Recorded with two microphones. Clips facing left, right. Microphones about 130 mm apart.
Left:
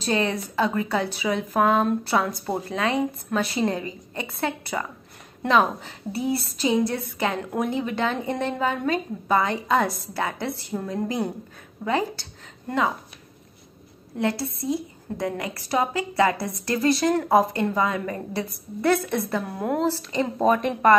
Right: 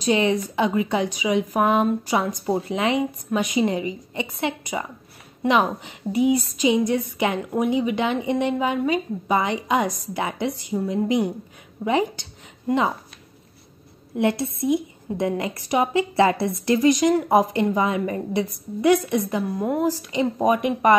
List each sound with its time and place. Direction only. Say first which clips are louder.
0.0 s a woman's voice: right 4 dB; 15° right (ahead or behind)
14.1 s a woman's voice: right 4 dB; 20° right (ahead or behind)
19.4 s a woman's voice: right 2 dB; 5° right (ahead or behind)
19.9 s a woman's voice: right 2 dB; 15° right (ahead or behind)